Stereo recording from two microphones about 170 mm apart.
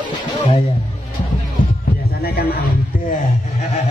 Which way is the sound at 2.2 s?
65° left (ahead or behind).